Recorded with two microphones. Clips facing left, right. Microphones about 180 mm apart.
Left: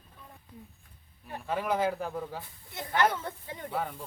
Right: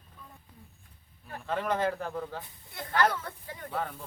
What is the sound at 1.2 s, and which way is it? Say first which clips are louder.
Speech: even; 10° left (ahead or behind).